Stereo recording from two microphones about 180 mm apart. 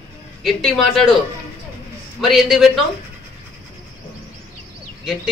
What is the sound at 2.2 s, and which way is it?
Speech, centre (ahead or behind).